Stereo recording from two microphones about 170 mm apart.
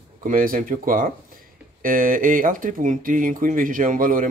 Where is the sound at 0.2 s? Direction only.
55° right (ahead or behind).